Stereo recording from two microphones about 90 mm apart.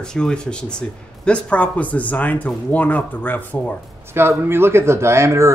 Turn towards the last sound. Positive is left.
turn(degrees=-30)  # may be behind; listen again after turning